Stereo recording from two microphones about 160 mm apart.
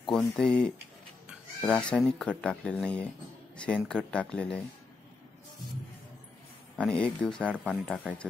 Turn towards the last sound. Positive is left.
turn(degrees=5)  # may be behind; listen again after turning